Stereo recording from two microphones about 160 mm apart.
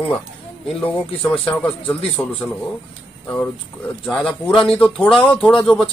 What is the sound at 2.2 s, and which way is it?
Speech, 10° left (ahead or behind).